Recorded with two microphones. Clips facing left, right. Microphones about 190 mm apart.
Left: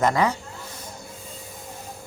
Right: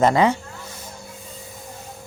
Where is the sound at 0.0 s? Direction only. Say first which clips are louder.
Right 4 dB; 25° right (ahead or behind).